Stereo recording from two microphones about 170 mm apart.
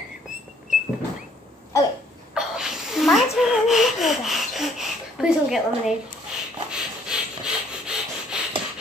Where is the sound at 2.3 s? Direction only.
5° right (ahead or behind).